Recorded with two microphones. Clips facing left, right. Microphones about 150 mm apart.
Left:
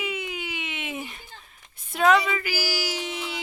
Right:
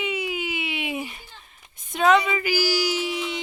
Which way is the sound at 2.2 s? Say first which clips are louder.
Right 5 dB; 15° right (ahead or behind).